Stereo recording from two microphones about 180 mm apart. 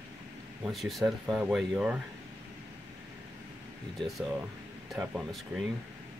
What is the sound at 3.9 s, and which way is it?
Speech, centre (ahead or behind).